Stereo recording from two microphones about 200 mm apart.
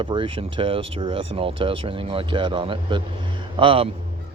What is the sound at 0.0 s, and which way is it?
Speech, 25° right (ahead or behind).